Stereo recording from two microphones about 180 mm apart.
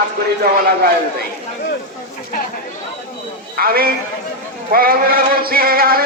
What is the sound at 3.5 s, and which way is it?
A man's voice, 55° right (ahead or behind).